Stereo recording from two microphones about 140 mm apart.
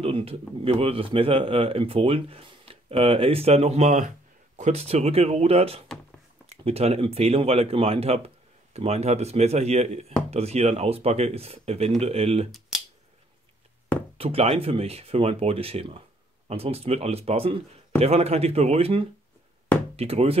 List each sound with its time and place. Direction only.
0.0 s speech: 45° right (ahead or behind)
14.1 s speech: 45° right (ahead or behind)